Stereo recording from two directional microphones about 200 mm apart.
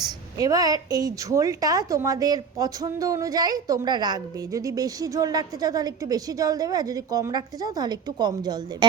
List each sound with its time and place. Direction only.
0.0 s a woman's voice: 20° right (ahead or behind)